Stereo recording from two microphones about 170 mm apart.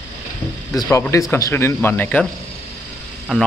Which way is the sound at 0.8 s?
15° left (ahead or behind).